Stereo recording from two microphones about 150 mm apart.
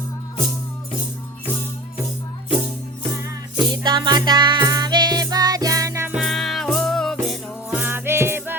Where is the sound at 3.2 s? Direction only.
25° right (ahead or behind).